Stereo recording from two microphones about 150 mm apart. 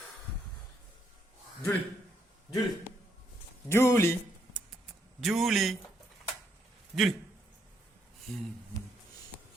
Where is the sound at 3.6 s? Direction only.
15° left (ahead or behind).